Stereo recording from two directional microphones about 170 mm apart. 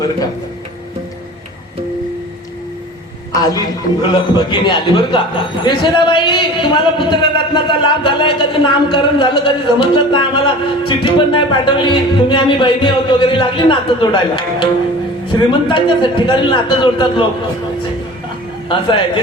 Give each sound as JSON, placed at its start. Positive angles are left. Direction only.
{"t": 3.4, "sound": "a man's voice", "side_deg": 25}
{"t": 18.7, "sound": "a man's voice", "side_deg": 30}